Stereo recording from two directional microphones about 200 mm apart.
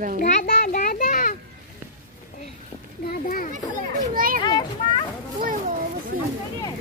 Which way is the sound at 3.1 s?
45° left (ahead or behind).